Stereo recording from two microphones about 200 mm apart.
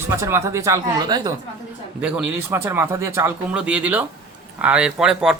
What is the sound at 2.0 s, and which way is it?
Speech, 5° right (ahead or behind).